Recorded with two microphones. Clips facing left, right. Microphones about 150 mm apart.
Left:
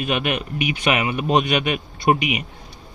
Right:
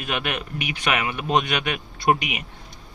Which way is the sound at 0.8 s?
20° left (ahead or behind).